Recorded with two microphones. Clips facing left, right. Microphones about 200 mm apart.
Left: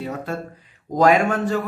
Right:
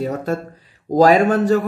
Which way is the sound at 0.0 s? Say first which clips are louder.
Right 6 dB; 40° right (ahead or behind).